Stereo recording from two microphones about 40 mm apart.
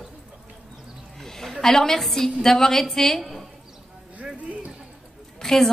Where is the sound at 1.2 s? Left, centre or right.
Centre.